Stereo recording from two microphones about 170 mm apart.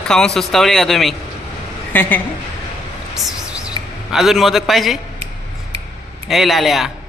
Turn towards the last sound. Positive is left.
turn(degrees=0)  # may be behind; listen again after turning